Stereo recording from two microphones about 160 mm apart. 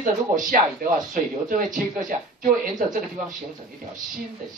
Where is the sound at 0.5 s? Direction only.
60° right (ahead or behind).